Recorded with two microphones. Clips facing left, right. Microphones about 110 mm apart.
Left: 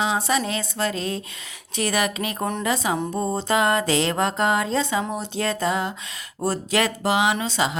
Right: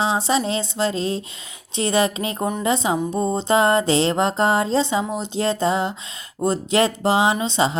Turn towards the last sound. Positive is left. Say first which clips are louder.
# right 3 dB
turn(degrees=-30)  # may be behind; listen again after turning